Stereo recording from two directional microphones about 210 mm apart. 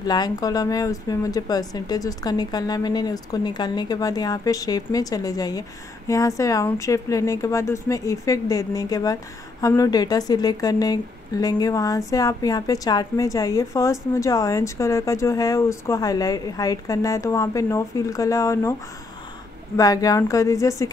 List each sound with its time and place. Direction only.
0.0 s speech: 20° left (ahead or behind)
19.8 s speech: 15° left (ahead or behind)